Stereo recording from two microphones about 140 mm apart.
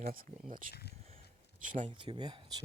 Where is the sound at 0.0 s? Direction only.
90° right.